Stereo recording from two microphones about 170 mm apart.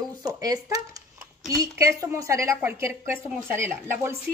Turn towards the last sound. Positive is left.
turn(degrees=-15)  # may be behind; listen again after turning